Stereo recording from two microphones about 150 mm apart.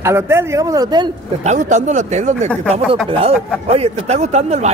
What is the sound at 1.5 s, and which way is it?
Speech, 55° right (ahead or behind).